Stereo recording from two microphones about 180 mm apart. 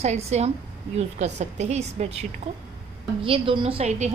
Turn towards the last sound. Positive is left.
turn(degrees=-40)  # may be behind; listen again after turning